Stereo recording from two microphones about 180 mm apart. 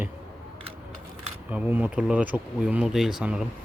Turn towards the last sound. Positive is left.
turn(degrees=-5)  # may be behind; listen again after turning